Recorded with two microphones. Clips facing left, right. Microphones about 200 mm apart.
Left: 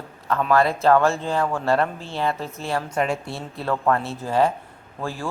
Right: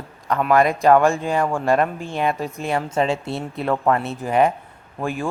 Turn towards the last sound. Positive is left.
turn(degrees=-15)  # may be behind; listen again after turning